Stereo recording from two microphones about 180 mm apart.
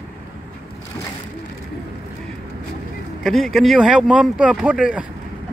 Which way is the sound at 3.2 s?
Centre (ahead or behind).